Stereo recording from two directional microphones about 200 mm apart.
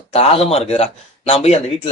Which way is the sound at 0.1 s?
30° left (ahead or behind).